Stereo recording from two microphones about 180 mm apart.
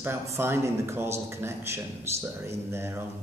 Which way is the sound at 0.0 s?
15° right (ahead or behind).